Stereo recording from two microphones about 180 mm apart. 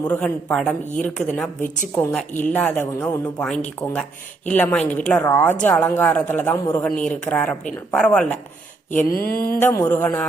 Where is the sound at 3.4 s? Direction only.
5° left (ahead or behind).